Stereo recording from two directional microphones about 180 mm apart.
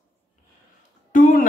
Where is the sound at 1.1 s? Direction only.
50° left (ahead or behind).